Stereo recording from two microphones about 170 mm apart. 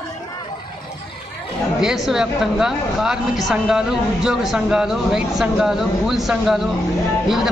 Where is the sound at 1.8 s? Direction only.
5° right (ahead or behind).